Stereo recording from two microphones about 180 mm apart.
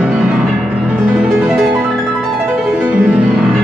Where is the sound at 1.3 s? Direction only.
Centre (ahead or behind).